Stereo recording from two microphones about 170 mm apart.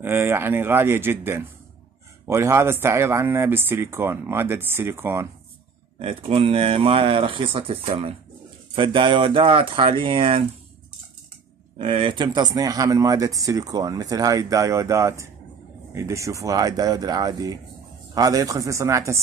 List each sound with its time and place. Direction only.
0.0 s speech: 10° right (ahead or behind)
5.9 s speech: 35° right (ahead or behind)
11.8 s speech: 30° right (ahead or behind)